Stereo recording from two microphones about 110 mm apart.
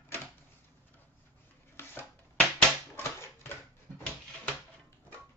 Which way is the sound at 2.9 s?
25° left (ahead or behind).